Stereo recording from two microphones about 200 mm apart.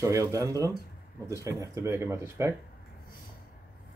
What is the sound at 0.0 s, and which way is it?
Speech, 15° right (ahead or behind).